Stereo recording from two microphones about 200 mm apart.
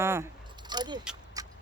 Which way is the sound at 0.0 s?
10° right (ahead or behind).